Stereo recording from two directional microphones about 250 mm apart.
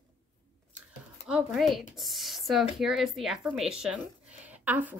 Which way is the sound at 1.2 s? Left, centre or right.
Centre.